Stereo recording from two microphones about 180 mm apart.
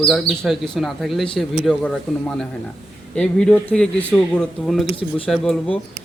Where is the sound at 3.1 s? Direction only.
5° left (ahead or behind).